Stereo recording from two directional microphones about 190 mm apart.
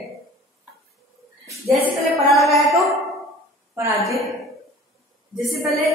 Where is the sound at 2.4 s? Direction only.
Centre (ahead or behind).